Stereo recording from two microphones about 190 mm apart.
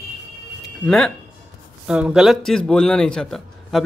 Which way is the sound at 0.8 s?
5° left (ahead or behind).